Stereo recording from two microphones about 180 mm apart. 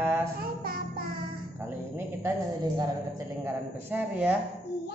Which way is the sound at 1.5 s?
15° right (ahead or behind).